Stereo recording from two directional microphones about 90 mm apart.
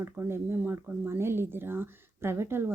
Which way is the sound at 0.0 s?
25° right (ahead or behind).